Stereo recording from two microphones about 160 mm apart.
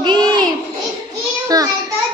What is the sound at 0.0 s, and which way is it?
Child singing, 25° right (ahead or behind).